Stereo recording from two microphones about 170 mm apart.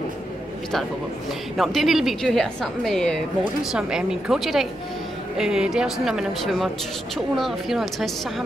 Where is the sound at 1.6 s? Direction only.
Centre (ahead or behind).